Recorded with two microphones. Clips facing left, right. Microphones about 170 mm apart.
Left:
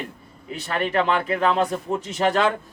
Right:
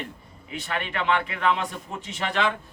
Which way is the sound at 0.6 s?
40° left (ahead or behind).